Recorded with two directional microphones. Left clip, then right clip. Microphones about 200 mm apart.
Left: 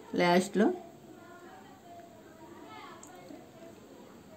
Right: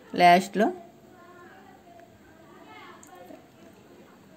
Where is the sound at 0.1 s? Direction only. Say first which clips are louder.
Right 9 dB; 15° right (ahead or behind).